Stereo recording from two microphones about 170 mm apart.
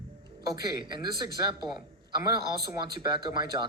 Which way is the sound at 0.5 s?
25° right (ahead or behind).